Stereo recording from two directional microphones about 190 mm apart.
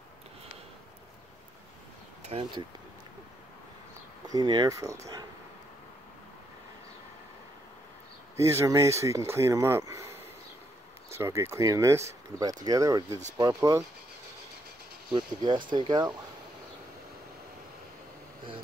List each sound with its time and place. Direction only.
2.2 s speech: 30° right (ahead or behind)
4.3 s speech: 20° right (ahead or behind)
8.4 s speech: 15° right (ahead or behind)
15.1 s speech: 25° right (ahead or behind)